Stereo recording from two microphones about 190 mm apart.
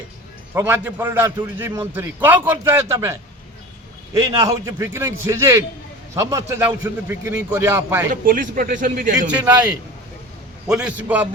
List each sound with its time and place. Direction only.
0.5 s a man's voice: 10° right (ahead or behind)
8.1 s a man's voice: 45° right (ahead or behind)
9.4 s a man's voice: 15° right (ahead or behind)
10.7 s a man's voice: 5° right (ahead or behind)